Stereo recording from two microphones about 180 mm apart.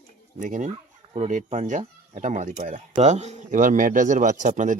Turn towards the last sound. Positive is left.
turn(degrees=-45)  # may be behind; listen again after turning